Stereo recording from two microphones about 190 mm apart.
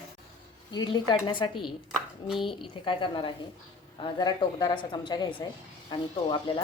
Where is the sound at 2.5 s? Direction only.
25° left (ahead or behind).